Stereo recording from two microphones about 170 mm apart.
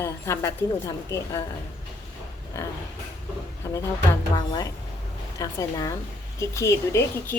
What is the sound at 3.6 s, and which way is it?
Music, 15° left (ahead or behind).